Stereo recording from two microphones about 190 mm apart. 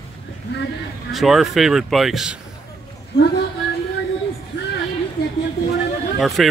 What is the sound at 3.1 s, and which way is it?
Speech, 65° left (ahead or behind).